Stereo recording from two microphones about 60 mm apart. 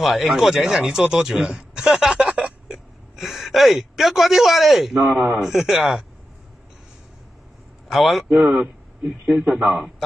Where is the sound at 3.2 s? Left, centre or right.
Centre.